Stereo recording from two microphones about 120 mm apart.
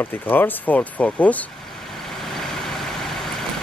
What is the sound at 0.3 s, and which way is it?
Speech, 15° left (ahead or behind).